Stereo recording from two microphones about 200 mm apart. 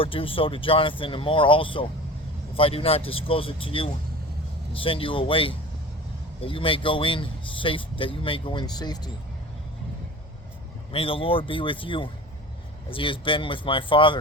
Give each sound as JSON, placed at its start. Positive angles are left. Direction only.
{"t": 0.0, "sound": "speech", "side_deg": 25}
{"t": 10.9, "sound": "speech", "side_deg": 25}